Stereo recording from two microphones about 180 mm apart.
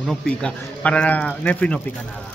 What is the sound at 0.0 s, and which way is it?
Speech, 5° left (ahead or behind).